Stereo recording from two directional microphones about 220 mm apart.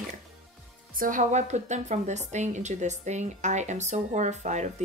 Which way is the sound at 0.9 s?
35° right (ahead or behind).